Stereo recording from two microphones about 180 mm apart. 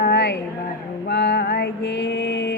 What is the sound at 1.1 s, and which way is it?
Female singing, 70° left (ahead or behind).